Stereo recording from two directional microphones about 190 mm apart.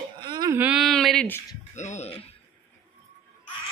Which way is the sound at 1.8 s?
35° left (ahead or behind).